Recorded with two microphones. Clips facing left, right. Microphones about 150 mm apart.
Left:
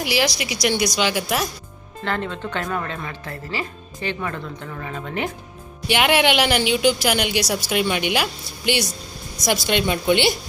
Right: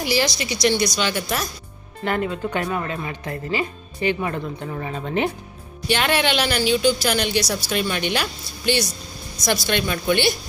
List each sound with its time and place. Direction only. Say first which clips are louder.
0.0 s a woman's voice: even; 5° left (ahead or behind)
2.0 s speech: right 3 dB; 10° right (ahead or behind)
5.9 s a woman's voice: left 2 dB; 15° left (ahead or behind)